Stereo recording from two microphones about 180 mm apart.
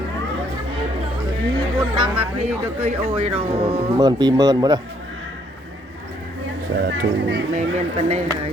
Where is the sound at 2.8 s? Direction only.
35° right (ahead or behind).